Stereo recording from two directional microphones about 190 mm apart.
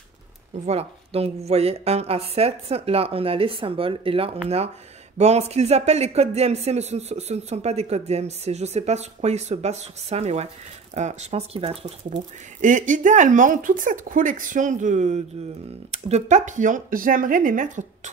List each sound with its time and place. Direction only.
0.7 s speech: 35° right (ahead or behind)
12.6 s speech: 40° right (ahead or behind)